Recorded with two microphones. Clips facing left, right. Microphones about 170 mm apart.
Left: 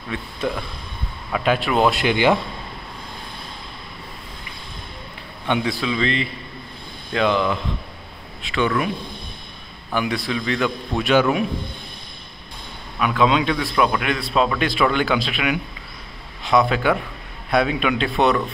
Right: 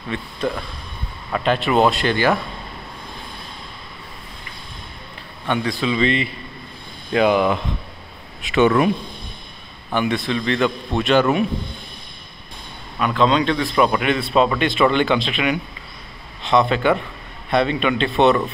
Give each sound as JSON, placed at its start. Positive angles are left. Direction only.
{"t": 0.4, "sound": "speech", "side_deg": 10}
{"t": 2.0, "sound": "speech", "side_deg": 15}
{"t": 5.5, "sound": "speech", "side_deg": 10}
{"t": 8.5, "sound": "speech", "side_deg": -20}
{"t": 9.9, "sound": "speech", "side_deg": 5}
{"t": 13.0, "sound": "speech", "side_deg": 5}